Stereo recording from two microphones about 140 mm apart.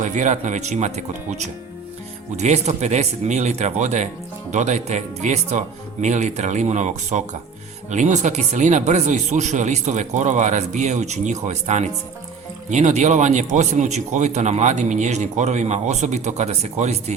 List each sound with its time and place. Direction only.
0.0 s speech: 60° right (ahead or behind)